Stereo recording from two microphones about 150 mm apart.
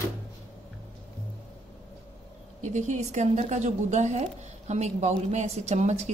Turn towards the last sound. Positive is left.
turn(degrees=-50)  # may be behind; listen again after turning